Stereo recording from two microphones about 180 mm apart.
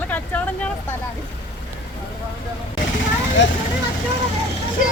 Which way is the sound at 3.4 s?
90° left.